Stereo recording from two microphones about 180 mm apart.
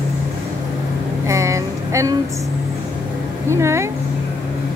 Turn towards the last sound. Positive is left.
turn(degrees=-15)  # may be behind; listen again after turning